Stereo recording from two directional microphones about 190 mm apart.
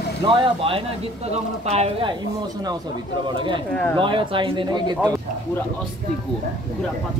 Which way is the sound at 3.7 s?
10° left (ahead or behind).